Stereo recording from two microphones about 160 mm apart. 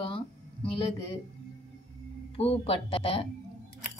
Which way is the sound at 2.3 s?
35° left (ahead or behind).